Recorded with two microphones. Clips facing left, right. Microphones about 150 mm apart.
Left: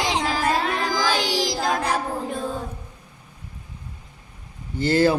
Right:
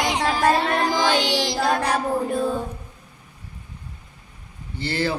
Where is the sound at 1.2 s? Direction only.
40° left (ahead or behind).